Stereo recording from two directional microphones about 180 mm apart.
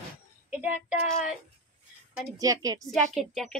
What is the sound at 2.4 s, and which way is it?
Speech, 20° right (ahead or behind).